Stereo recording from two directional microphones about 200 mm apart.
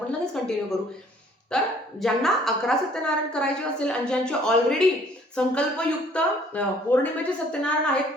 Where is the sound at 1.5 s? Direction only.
5° left (ahead or behind).